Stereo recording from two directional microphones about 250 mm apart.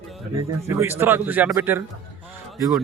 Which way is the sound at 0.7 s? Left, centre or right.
Centre.